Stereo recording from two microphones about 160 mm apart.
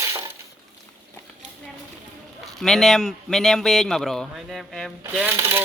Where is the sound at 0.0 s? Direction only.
15° right (ahead or behind).